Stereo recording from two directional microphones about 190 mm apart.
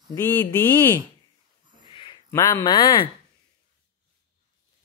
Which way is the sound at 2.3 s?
15° left (ahead or behind).